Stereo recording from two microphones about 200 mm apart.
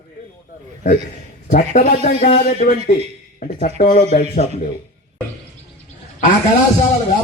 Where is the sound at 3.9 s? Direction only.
40° left (ahead or behind).